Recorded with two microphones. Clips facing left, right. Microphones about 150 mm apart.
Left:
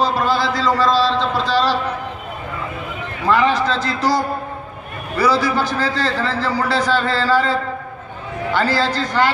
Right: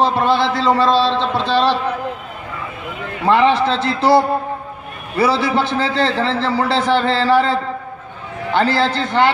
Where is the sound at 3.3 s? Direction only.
25° right (ahead or behind).